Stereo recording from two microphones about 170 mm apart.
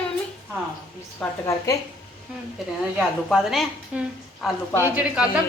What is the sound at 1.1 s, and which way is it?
Speech, 20° left (ahead or behind).